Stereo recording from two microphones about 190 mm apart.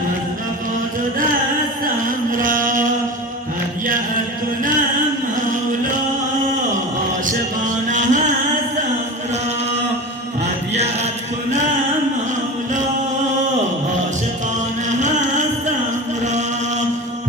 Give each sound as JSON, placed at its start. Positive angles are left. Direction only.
{"t": 2.0, "sound": "a sound", "side_deg": -45}
{"t": 7.9, "sound": "music", "side_deg": -40}
{"t": 14.8, "sound": "music", "side_deg": -40}
{"t": 16.2, "sound": "chant", "side_deg": -40}